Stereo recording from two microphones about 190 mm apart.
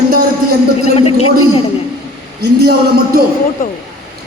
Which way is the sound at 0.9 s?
30° left (ahead or behind).